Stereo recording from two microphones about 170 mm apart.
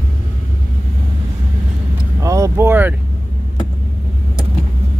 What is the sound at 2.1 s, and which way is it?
Vehicle, 20° right (ahead or behind).